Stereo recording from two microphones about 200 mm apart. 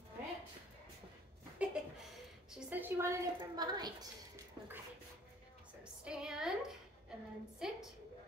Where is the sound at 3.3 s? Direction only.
20° right (ahead or behind).